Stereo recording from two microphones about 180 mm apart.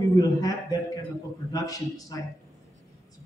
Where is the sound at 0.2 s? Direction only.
20° left (ahead or behind).